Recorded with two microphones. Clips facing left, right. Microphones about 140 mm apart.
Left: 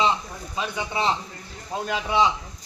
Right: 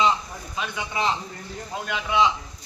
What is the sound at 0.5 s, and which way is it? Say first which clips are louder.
A man's voice: left 2 dB; 30° left (ahead or behind).